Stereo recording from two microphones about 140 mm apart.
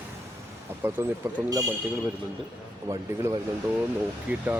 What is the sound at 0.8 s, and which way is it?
Speech, 15° right (ahead or behind).